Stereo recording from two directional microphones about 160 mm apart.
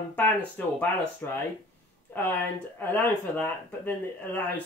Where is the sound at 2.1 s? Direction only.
15° left (ahead or behind).